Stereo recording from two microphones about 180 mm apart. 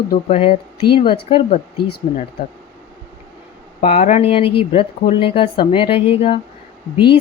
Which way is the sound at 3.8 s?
40° left (ahead or behind).